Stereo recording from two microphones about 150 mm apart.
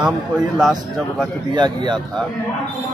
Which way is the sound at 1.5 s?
30° right (ahead or behind).